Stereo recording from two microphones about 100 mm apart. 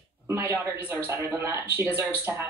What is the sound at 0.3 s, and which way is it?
Speech, 20° right (ahead or behind).